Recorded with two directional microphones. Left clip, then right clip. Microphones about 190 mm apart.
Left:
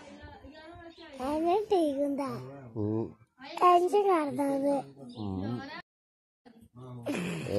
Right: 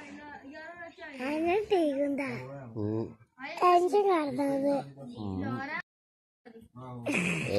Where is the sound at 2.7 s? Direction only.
30° left (ahead or behind).